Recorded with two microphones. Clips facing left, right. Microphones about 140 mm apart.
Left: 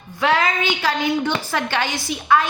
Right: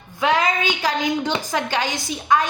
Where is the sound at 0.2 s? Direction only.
20° right (ahead or behind).